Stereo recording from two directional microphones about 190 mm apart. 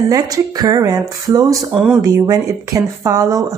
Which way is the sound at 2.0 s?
20° right (ahead or behind).